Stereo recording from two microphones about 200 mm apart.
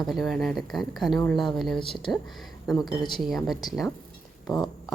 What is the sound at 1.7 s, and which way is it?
Speech, 25° left (ahead or behind).